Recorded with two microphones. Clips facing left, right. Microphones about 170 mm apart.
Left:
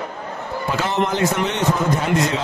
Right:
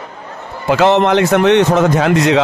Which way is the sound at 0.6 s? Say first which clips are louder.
Right 11 dB; 80° right.